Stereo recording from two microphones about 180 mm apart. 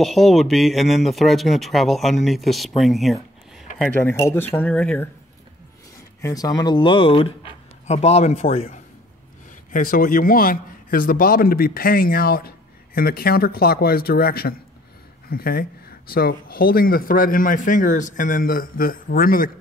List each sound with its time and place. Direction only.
0.0 s speech: centre (ahead or behind)
3.7 s speech: 10° left (ahead or behind)
6.2 s speech: 20° left (ahead or behind)
9.7 s a man's voice: 50° left (ahead or behind)